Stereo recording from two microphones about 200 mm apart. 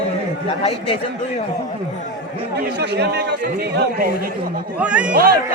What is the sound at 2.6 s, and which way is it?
Speech, 55° right (ahead or behind).